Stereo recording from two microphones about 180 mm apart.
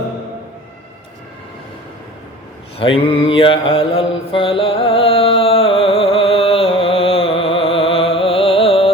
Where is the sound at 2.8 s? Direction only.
30° left (ahead or behind).